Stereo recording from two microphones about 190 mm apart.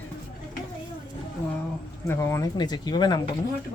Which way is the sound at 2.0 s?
15° left (ahead or behind).